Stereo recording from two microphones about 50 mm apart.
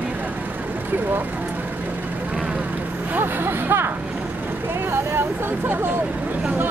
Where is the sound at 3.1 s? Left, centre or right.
Right.